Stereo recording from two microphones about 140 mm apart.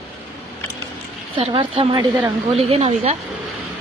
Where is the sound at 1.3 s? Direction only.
40° right (ahead or behind).